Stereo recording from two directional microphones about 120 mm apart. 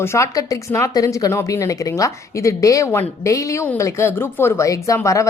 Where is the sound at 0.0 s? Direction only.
25° left (ahead or behind).